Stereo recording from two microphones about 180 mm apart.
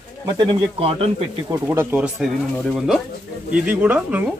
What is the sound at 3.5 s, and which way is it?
Speech, 10° right (ahead or behind).